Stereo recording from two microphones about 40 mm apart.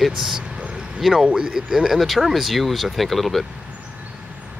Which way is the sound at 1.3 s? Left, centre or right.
Right.